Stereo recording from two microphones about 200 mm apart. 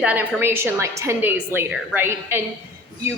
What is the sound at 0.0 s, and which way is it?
A woman's voice, 10° right (ahead or behind).